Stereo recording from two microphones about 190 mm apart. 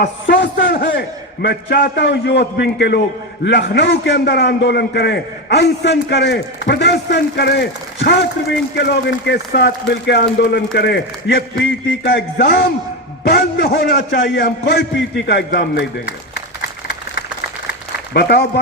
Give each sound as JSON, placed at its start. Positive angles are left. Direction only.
{"t": 0.0, "sound": "a man's voice", "side_deg": 65}
{"t": 18.1, "sound": "a man's voice", "side_deg": 55}